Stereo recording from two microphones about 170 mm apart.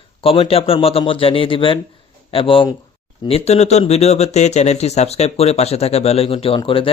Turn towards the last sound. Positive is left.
turn(degrees=30)  # may be behind; listen again after turning